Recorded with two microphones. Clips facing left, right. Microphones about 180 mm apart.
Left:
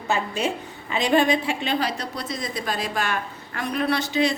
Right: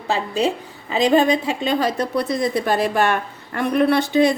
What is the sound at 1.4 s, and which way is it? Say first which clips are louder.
A woman's voice: right 5 dB; 45° right (ahead or behind).